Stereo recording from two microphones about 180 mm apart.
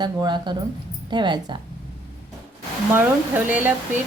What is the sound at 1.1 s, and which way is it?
Speech, 25° right (ahead or behind).